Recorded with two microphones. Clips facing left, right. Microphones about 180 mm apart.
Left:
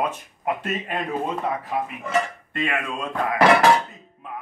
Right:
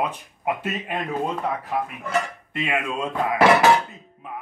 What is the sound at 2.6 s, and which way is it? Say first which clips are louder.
Speech: right 1 dB; 15° right (ahead or behind).